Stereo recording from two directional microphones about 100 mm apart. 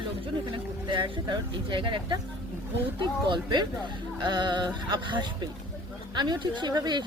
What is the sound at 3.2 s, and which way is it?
Speech, 50° right (ahead or behind).